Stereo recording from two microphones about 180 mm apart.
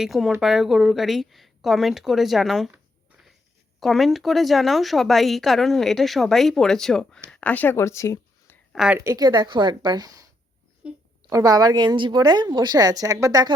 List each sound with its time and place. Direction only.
0.0 s speech: centre (ahead or behind)
3.8 s speech: centre (ahead or behind)
8.7 s speech: 5° right (ahead or behind)
9.0 s a woman's voice: 20° right (ahead or behind)
10.8 s a woman's voice: 5° right (ahead or behind)
11.3 s a woman's voice: 20° right (ahead or behind)